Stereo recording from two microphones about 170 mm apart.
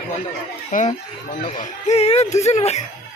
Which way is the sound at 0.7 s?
50° left (ahead or behind).